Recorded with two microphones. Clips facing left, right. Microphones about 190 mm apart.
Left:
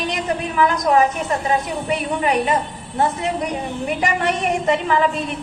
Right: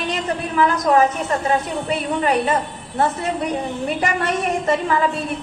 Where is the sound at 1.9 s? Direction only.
15° left (ahead or behind).